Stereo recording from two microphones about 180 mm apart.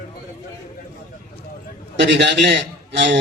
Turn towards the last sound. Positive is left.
turn(degrees=-75)  # may be behind; listen again after turning